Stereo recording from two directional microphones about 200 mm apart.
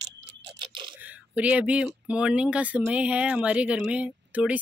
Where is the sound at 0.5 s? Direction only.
25° right (ahead or behind).